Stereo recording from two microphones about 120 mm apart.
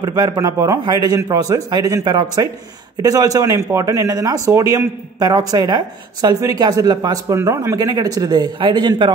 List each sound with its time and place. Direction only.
0.0 s speech: 35° right (ahead or behind)
7.3 s speech: 20° right (ahead or behind); by 9.1 s 40° right (ahead or behind)